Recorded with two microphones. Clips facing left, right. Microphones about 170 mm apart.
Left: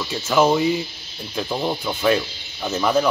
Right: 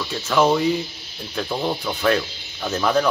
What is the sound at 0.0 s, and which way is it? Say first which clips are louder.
Speech: left 1 dB; 10° left (ahead or behind).